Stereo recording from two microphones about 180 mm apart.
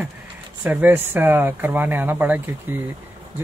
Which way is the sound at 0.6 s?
10° right (ahead or behind).